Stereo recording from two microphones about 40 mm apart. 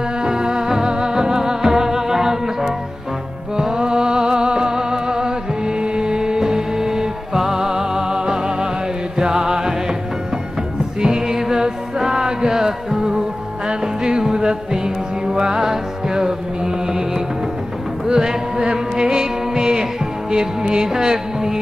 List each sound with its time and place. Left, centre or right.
0.2 s music: centre
11.0 s music: centre